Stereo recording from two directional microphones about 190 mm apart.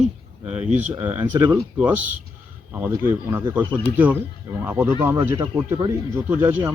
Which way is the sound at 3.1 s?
15° right (ahead or behind).